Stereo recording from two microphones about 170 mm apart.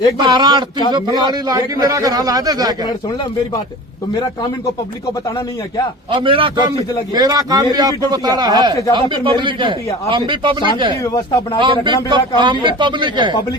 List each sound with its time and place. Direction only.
0.2 s a man's voice: 25° right (ahead or behind)
6.1 s a man's voice: 30° right (ahead or behind)